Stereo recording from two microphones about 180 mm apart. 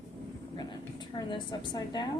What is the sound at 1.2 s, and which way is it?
Speech, 25° left (ahead or behind).